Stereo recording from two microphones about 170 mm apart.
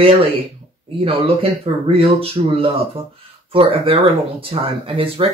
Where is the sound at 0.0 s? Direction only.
35° right (ahead or behind).